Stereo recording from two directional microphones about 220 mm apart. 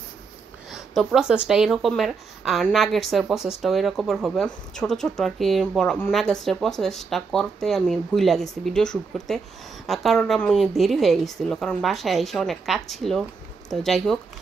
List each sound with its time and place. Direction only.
0.7 s speech: centre (ahead or behind)